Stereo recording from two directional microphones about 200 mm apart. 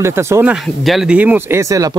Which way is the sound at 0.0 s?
15° right (ahead or behind).